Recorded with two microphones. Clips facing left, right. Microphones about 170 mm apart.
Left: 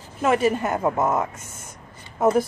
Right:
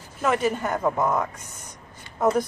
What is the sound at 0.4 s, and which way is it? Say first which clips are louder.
Speech: left 3 dB; 5° left (ahead or behind).